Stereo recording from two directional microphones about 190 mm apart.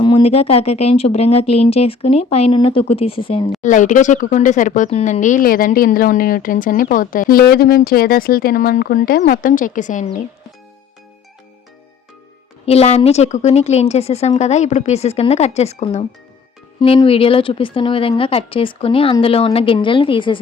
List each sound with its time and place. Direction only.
0.0 s speech: 30° left (ahead or behind)
3.6 s speech: 40° left (ahead or behind)
12.6 s speech: 35° left (ahead or behind)